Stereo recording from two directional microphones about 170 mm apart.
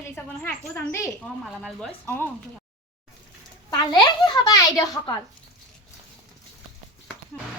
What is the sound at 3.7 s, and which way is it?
A child's voice, 25° left (ahead or behind).